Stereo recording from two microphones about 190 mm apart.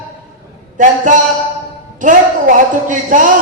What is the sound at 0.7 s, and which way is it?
Speech, 40° right (ahead or behind).